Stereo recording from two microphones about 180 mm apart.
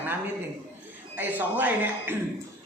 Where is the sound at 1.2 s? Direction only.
10° right (ahead or behind).